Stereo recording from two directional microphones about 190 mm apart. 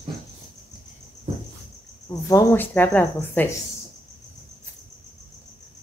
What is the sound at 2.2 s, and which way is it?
Speech, 15° left (ahead or behind).